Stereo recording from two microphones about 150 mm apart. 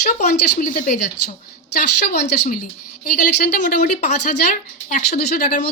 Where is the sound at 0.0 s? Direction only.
55° left (ahead or behind).